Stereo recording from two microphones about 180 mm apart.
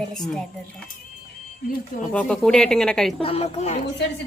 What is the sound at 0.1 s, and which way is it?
Speech, centre (ahead or behind).